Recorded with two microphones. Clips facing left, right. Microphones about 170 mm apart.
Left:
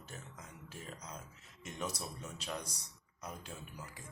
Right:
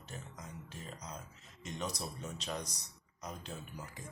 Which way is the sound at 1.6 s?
5° left (ahead or behind).